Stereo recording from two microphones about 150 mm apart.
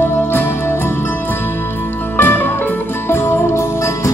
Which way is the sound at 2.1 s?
15° left (ahead or behind).